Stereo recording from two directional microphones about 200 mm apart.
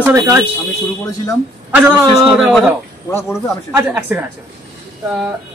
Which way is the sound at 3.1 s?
15° left (ahead or behind).